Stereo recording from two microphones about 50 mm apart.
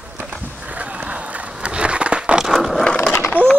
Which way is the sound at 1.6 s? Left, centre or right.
Right.